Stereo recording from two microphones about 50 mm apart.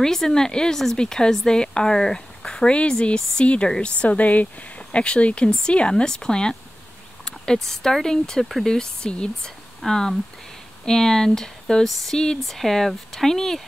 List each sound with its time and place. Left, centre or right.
0.0 s speech: centre
7.5 s speech: centre